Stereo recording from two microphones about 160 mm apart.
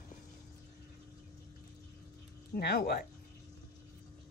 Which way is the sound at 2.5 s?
85° left.